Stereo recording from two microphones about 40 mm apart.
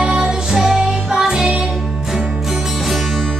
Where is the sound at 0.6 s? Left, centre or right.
Centre.